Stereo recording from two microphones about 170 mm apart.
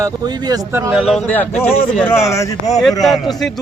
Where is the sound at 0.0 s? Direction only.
25° right (ahead or behind).